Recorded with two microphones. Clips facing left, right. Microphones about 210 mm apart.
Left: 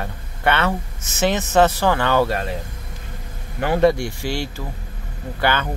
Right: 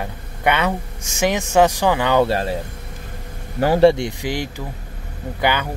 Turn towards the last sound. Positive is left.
turn(degrees=-15)  # may be behind; listen again after turning